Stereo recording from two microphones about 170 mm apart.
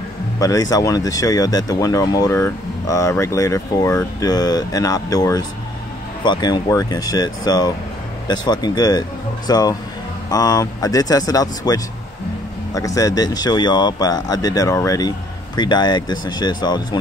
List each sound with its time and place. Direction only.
0.4 s speech: 20° left (ahead or behind)